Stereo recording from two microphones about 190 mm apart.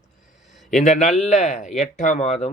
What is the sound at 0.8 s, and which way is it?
Speech, 40° left (ahead or behind).